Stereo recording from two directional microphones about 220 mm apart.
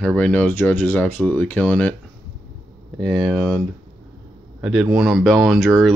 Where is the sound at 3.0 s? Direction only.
Centre (ahead or behind).